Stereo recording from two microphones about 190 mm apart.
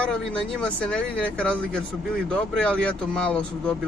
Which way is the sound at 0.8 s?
5° left (ahead or behind).